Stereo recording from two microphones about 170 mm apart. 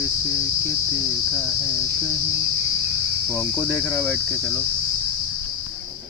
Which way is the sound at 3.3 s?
5° left (ahead or behind).